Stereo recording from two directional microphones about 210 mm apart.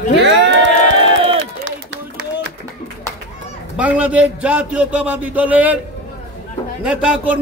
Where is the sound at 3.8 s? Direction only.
5° right (ahead or behind).